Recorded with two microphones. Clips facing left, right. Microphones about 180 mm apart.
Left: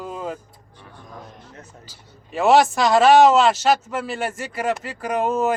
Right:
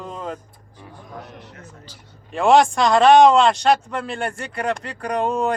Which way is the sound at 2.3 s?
5° left (ahead or behind).